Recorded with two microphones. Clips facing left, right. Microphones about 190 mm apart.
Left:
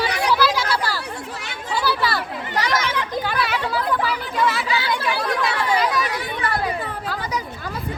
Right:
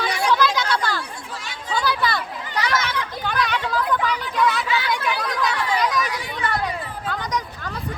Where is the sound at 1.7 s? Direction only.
5° left (ahead or behind).